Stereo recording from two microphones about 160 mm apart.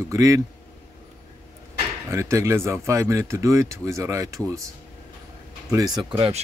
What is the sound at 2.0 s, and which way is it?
Speech, 20° right (ahead or behind).